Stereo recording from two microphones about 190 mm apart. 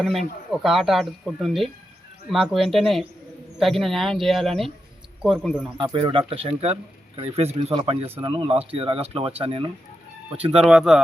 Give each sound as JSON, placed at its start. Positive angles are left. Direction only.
{"t": 0.0, "sound": "speech", "side_deg": 0}
{"t": 5.7, "sound": "speech", "side_deg": -25}
{"t": 10.6, "sound": "speech", "side_deg": -5}